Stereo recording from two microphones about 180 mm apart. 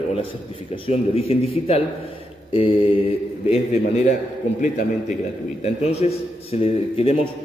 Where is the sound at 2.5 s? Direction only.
30° left (ahead or behind).